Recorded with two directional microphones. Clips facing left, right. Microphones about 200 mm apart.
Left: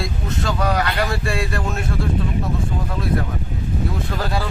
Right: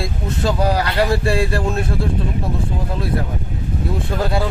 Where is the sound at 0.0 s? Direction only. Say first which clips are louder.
Right 3 dB; 30° right (ahead or behind).